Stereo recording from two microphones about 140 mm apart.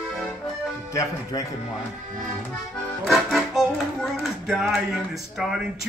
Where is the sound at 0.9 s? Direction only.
20° left (ahead or behind).